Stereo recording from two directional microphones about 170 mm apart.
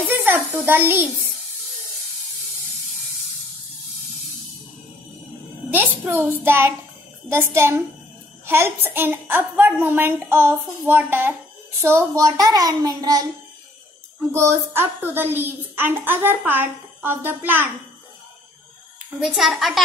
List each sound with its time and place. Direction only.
0.1 s a child's voice: 10° right (ahead or behind)
5.7 s a woman's voice: 10° right (ahead or behind)
14.3 s a woman's voice: 15° right (ahead or behind)
19.1 s a child's voice: centre (ahead or behind)